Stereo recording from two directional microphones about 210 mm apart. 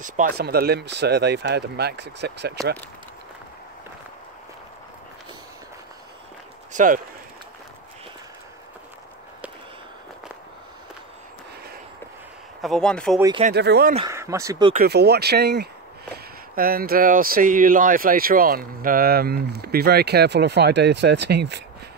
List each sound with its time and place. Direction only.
0.0 s speech: 45° right (ahead or behind)
6.7 s a sound: 40° right (ahead or behind)
12.6 s speech: 5° left (ahead or behind)
13.4 s speech: 50° right (ahead or behind)
14.0 s speech: 15° right (ahead or behind)
14.7 s speech: 45° right (ahead or behind)